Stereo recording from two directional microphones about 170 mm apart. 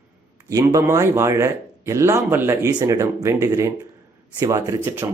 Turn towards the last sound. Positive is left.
turn(degrees=-15)  # may be behind; listen again after turning